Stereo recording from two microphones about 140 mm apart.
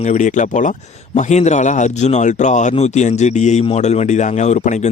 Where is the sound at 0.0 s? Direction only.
60° left (ahead or behind).